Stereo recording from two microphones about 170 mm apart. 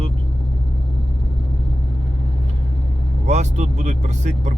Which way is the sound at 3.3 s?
45° right (ahead or behind).